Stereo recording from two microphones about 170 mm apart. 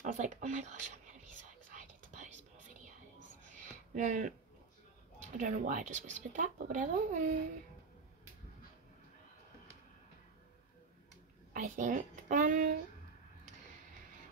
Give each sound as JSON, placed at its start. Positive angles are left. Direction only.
{"t": 0.0, "sound": "speech", "side_deg": -45}
{"t": 3.9, "sound": "speech", "side_deg": -45}
{"t": 5.4, "sound": "speech", "side_deg": -50}
{"t": 11.5, "sound": "speech", "side_deg": -50}